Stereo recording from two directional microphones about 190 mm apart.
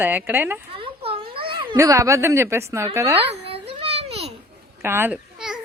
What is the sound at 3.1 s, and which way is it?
Babbling, 30° right (ahead or behind).